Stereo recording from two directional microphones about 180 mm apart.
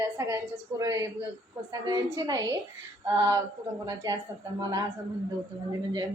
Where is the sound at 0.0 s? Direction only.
15° right (ahead or behind).